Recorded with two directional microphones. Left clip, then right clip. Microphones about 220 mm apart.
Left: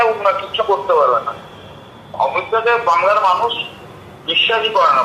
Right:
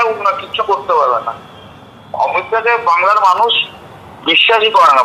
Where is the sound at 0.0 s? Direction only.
15° right (ahead or behind).